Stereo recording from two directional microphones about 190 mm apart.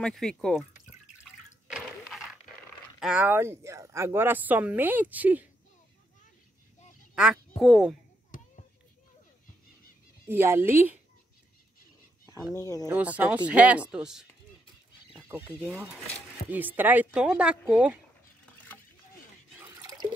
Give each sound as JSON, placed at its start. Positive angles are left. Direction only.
{"t": 0.0, "sound": "speech", "side_deg": 5}
{"t": 1.7, "sound": "a sound", "side_deg": 0}
{"t": 3.0, "sound": "speech", "side_deg": -5}
{"t": 7.2, "sound": "speech", "side_deg": 0}
{"t": 10.2, "sound": "speech", "side_deg": -10}
{"t": 12.5, "sound": "speech", "side_deg": 15}
{"t": 12.8, "sound": "speech", "side_deg": -10}
{"t": 15.2, "sound": "speech", "side_deg": -10}
{"t": 19.6, "sound": "drip", "side_deg": -20}